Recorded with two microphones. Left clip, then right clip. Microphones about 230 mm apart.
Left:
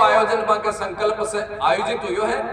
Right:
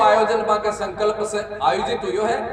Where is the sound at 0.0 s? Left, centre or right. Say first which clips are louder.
Even; left.